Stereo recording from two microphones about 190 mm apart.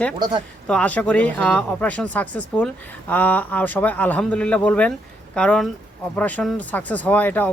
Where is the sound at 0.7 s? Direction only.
5° left (ahead or behind).